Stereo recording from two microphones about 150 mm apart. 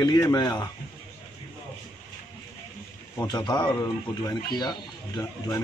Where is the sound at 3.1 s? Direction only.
25° left (ahead or behind).